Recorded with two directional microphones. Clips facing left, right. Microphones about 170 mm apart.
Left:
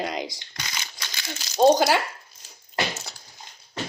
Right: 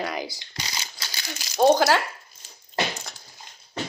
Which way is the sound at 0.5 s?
30° right (ahead or behind).